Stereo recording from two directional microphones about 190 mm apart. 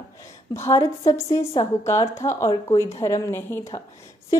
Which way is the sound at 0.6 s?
15° left (ahead or behind).